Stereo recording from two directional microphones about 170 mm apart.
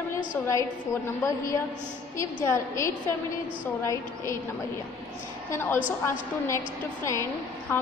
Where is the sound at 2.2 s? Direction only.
15° left (ahead or behind).